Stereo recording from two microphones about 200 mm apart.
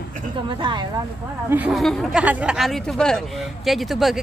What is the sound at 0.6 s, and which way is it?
Speech, 25° right (ahead or behind).